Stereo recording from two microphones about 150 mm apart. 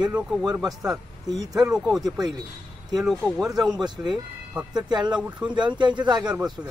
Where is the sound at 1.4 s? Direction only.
25° right (ahead or behind).